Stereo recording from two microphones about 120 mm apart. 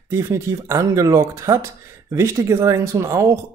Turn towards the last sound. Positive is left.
turn(degrees=-25)  # may be behind; listen again after turning